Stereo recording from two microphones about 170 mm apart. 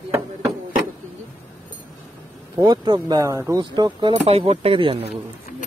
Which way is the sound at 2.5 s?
25° right (ahead or behind).